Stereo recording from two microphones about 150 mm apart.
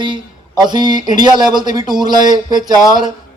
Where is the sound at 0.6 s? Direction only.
30° right (ahead or behind).